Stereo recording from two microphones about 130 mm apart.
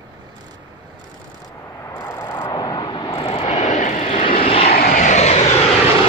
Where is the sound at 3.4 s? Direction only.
60° left (ahead or behind).